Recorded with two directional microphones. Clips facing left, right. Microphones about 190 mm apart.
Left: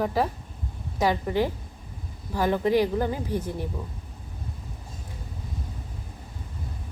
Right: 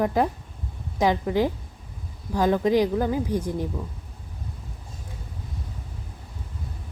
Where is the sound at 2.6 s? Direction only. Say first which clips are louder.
Right 2 dB; 15° right (ahead or behind).